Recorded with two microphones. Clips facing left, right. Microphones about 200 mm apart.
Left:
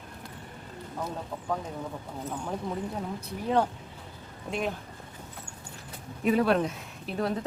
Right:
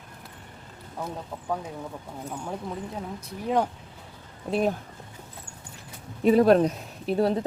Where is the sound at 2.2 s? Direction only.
10° right (ahead or behind).